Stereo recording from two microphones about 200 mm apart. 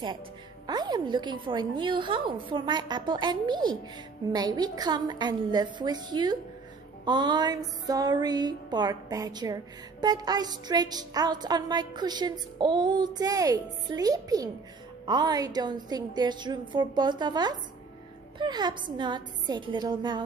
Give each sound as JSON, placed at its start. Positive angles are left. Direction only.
{"t": 0.7, "sound": "music", "side_deg": -20}